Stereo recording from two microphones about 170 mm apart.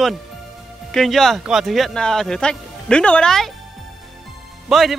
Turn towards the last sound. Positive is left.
turn(degrees=0)  # may be behind; listen again after turning